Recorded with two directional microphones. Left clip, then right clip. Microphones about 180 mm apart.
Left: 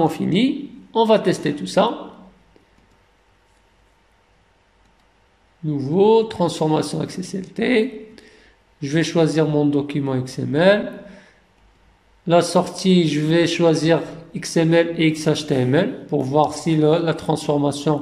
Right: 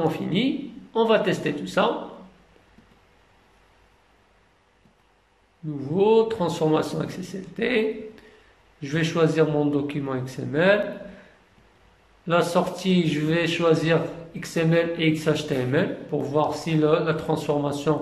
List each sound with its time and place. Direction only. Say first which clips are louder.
0.0 s speech: left 5 dB; 30° left (ahead or behind)
5.7 s speech: left 5 dB; 30° left (ahead or behind)
12.3 s speech: left 5 dB; 30° left (ahead or behind)